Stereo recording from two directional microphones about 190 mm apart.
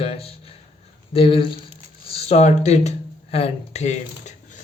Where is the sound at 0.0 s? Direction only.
30° left (ahead or behind).